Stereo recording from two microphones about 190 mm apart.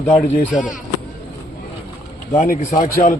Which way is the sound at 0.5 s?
40° left (ahead or behind).